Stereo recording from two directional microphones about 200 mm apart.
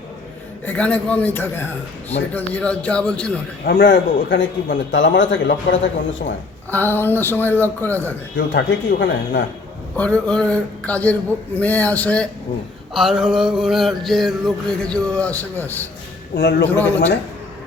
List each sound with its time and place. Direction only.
0.6 s a man's voice: 5° left (ahead or behind)
2.3 s mantra: 5° left (ahead or behind)
3.7 s a man's voice: 60° left (ahead or behind)
6.7 s a man's voice: 10° left (ahead or behind)
8.4 s speech: 60° left (ahead or behind)
9.9 s a man's voice: 5° left (ahead or behind)
12.9 s mantra: centre (ahead or behind)
16.3 s speech: 60° left (ahead or behind)